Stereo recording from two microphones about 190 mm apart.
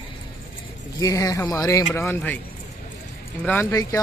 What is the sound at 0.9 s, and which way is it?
Speech, 20° left (ahead or behind).